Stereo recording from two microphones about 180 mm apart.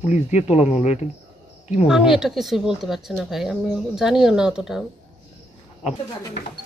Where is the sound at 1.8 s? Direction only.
5° right (ahead or behind).